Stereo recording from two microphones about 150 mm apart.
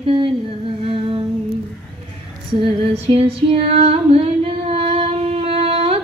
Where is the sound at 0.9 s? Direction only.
35° right (ahead or behind).